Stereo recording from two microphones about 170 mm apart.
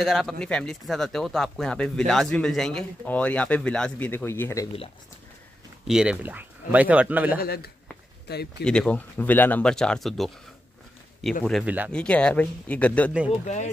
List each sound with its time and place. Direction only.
0.0 s speech: centre (ahead or behind)
5.9 s speech: 5° right (ahead or behind)
7.3 s speech: 65° left (ahead or behind)
8.6 s speech: 5° left (ahead or behind)
11.6 s speech: 10° right (ahead or behind)
11.9 s speech: 5° left (ahead or behind)